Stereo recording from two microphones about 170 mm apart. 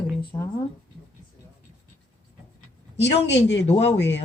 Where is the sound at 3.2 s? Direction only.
90° left.